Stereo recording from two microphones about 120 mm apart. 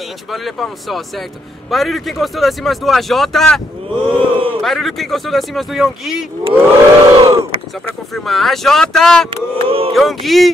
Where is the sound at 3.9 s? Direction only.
50° right (ahead or behind).